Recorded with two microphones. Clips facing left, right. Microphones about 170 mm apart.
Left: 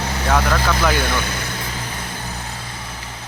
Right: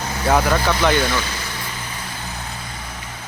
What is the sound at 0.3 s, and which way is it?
Speech, 5° right (ahead or behind).